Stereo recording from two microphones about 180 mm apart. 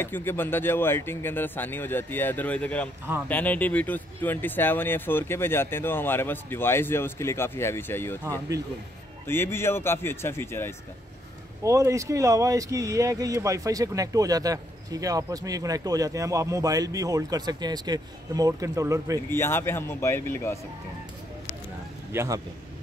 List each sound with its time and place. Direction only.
0.0 s speech: 10° left (ahead or behind)
9.3 s speech: 15° left (ahead or behind)
11.6 s speech: 15° right (ahead or behind)
19.3 s speech: 15° left (ahead or behind)
22.1 s speech: 15° right (ahead or behind)